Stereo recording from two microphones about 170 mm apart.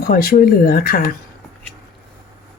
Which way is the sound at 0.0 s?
60° left (ahead or behind).